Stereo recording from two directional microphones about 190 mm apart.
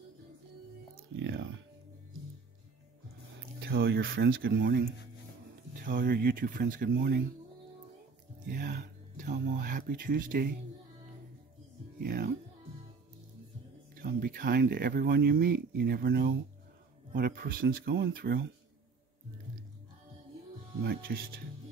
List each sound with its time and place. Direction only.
1.1 s music: 75° right (ahead or behind)
3.5 s speech: 60° right (ahead or behind); by 4.4 s 75° right (ahead or behind)
4.4 s speech: 60° right (ahead or behind)
5.9 s speech: 50° right (ahead or behind)
8.5 s speech: 55° right (ahead or behind)
12.0 s speech: 55° right (ahead or behind)
13.9 s speech: 50° right (ahead or behind)
20.8 s speech: 55° right (ahead or behind)